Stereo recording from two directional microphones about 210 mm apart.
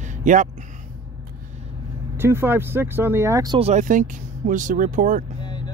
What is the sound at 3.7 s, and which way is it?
Speech, 35° right (ahead or behind).